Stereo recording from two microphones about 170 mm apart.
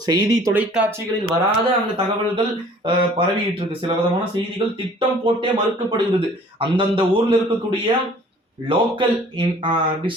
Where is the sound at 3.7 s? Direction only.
30° right (ahead or behind).